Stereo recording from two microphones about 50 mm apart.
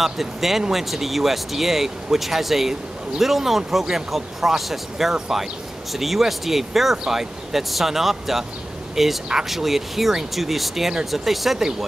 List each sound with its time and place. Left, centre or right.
0.0 s speech: centre